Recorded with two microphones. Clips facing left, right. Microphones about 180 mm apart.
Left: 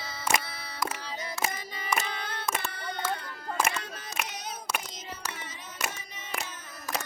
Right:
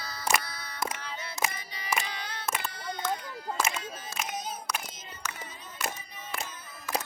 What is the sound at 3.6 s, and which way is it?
Single-lens reflex camera, 65° left (ahead or behind).